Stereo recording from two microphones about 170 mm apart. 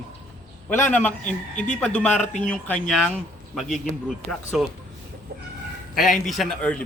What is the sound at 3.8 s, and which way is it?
Speech, centre (ahead or behind).